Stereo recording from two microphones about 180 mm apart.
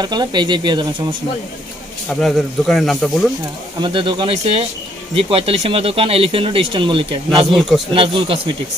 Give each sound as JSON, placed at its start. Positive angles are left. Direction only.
{"t": 0.0, "sound": "speech", "side_deg": -25}
{"t": 2.0, "sound": "speech", "side_deg": 0}
{"t": 3.8, "sound": "speech", "side_deg": -25}